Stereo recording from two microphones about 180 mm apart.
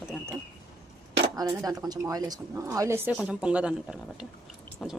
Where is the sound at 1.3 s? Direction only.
20° right (ahead or behind).